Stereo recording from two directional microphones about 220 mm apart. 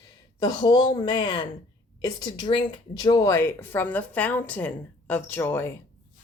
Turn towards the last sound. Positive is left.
turn(degrees=10)  # may be behind; listen again after turning